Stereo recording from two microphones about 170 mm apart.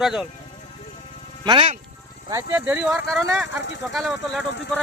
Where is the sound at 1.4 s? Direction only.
30° right (ahead or behind).